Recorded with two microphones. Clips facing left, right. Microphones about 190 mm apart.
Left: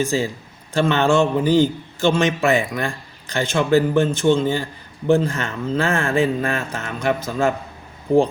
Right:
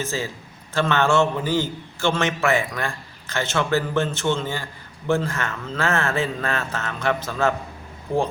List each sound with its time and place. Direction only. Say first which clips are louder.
0.0 s a man's voice: left 7 dB; 15° left (ahead or behind)